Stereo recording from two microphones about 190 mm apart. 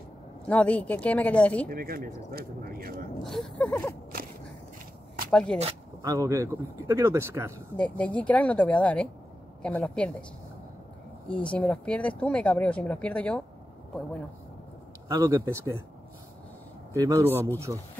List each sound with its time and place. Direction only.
0.5 s speech: 5° left (ahead or behind)
1.7 s speech: 50° right (ahead or behind)
3.3 s speech: centre (ahead or behind)
5.3 s speech: 5° left (ahead or behind)
6.0 s speech: 15° right (ahead or behind)
7.7 s speech: 5° left (ahead or behind)
11.5 s speech: 5° left (ahead or behind)
15.0 s speech: 15° right (ahead or behind)
16.9 s speech: 15° right (ahead or behind)